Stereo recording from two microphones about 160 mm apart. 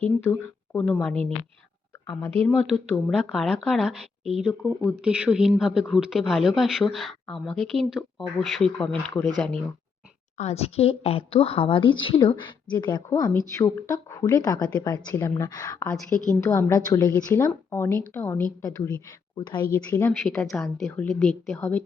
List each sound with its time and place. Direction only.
0.0 s speech: 10° left (ahead or behind)
2.6 s speech: 5° left (ahead or behind)
10.3 s a woman's voice: 45° left (ahead or behind); by 15.9 s 25° left (ahead or behind)
16.0 s a woman's voice: 20° right (ahead or behind)
16.5 s a woman's voice: 15° left (ahead or behind)
19.4 s a woman's voice: 25° left (ahead or behind)
19.7 s speech: 15° left (ahead or behind)
20.2 s speech: 5° left (ahead or behind)